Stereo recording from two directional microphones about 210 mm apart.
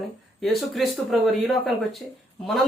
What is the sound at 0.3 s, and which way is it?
Speech, centre (ahead or behind).